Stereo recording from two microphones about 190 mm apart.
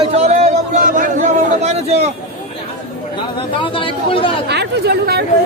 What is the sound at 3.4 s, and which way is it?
Speech, 30° left (ahead or behind).